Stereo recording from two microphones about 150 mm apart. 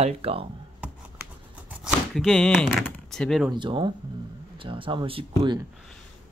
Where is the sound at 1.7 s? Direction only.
5° right (ahead or behind).